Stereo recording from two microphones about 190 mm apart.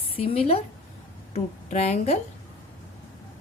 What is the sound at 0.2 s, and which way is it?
A woman's voice, 30° left (ahead or behind).